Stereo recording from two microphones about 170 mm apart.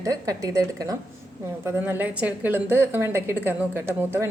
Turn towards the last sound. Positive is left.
turn(degrees=-15)  # may be behind; listen again after turning